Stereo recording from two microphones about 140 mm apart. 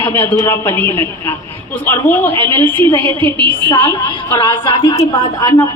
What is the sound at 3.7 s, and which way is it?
A woman's voice, 30° left (ahead or behind).